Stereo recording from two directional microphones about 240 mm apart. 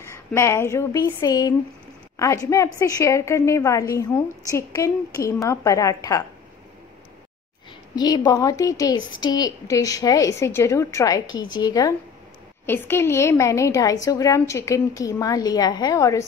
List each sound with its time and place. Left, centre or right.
0.1 s a woman's voice: centre
7.9 s a woman's voice: centre